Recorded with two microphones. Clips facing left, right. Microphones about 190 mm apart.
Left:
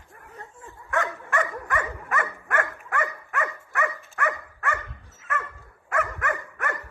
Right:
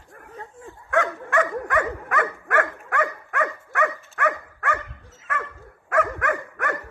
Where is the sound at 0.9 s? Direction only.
60° right (ahead or behind).